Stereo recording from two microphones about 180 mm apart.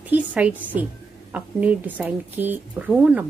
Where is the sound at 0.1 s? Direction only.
10° right (ahead or behind).